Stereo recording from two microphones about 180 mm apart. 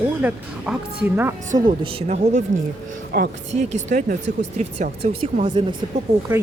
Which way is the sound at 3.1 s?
55° right (ahead or behind).